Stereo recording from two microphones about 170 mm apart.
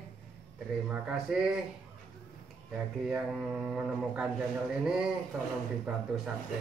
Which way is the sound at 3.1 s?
5° right (ahead or behind).